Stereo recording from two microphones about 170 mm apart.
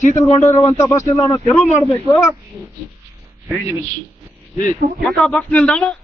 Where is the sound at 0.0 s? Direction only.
40° left (ahead or behind).